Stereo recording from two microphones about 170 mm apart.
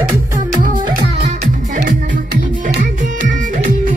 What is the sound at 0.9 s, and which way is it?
Music, 55° right (ahead or behind).